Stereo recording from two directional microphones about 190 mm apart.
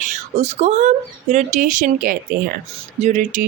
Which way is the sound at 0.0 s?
40° right (ahead or behind).